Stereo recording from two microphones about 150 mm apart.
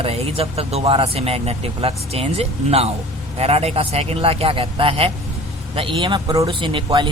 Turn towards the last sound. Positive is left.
turn(degrees=-30)  # may be behind; listen again after turning